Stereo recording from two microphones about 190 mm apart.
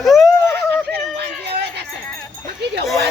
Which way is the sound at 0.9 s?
60° right (ahead or behind).